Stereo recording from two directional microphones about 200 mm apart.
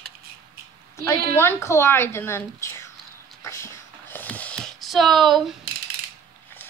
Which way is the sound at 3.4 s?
15° left (ahead or behind).